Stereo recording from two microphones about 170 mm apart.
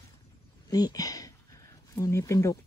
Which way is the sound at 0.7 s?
20° left (ahead or behind).